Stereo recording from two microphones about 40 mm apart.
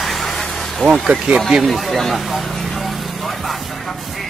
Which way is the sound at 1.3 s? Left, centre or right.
Right.